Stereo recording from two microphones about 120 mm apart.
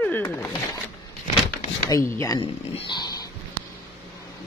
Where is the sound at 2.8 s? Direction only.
35° left (ahead or behind).